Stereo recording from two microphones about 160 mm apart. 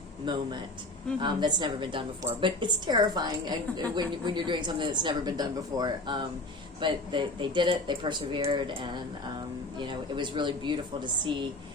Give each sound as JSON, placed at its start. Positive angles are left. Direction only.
{"t": 0.3, "sound": "a woman's voice", "side_deg": -30}